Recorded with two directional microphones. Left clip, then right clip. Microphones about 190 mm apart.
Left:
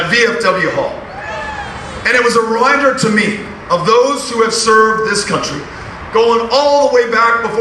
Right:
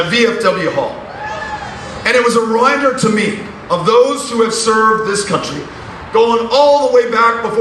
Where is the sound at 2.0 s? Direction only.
25° left (ahead or behind).